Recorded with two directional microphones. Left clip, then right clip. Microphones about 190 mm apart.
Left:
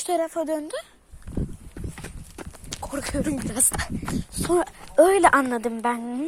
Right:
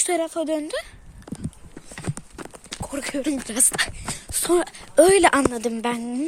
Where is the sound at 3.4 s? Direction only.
Centre (ahead or behind).